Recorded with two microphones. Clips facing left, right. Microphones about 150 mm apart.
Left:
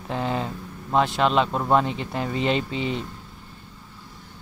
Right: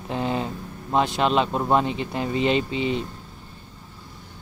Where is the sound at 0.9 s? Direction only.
20° right (ahead or behind).